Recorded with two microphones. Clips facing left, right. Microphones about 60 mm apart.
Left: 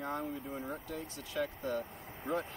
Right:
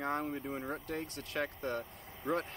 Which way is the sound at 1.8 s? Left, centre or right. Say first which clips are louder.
Left 2 dB; left.